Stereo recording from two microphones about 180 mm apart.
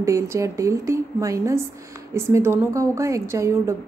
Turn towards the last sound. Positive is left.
turn(degrees=-15)  # may be behind; listen again after turning